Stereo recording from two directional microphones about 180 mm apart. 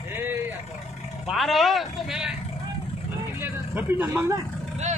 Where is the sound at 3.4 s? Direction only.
10° right (ahead or behind).